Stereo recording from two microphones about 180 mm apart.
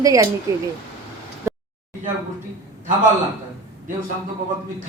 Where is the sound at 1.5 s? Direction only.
15° right (ahead or behind).